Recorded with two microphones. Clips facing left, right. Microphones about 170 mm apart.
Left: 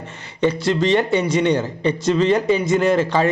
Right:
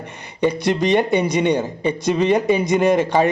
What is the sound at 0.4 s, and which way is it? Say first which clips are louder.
A man's voice: even; 15° right (ahead or behind).